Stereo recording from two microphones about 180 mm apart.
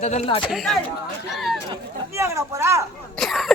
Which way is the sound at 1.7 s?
15° right (ahead or behind).